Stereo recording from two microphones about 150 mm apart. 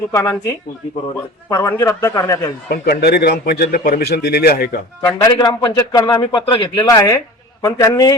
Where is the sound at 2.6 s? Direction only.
90° left.